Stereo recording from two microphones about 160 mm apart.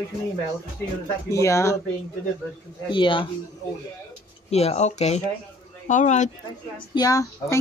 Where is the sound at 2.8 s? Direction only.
30° left (ahead or behind).